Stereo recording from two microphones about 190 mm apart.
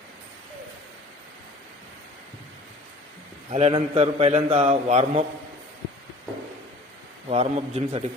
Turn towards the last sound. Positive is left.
turn(degrees=-35)  # may be behind; listen again after turning